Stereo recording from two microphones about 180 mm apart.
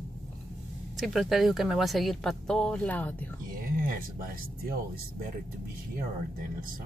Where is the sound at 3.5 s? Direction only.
50° right (ahead or behind).